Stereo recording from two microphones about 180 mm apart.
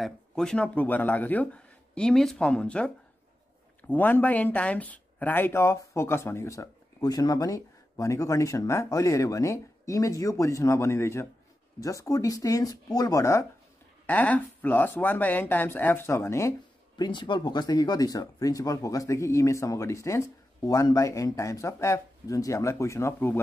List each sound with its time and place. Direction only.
0.0 s speech: 5° left (ahead or behind)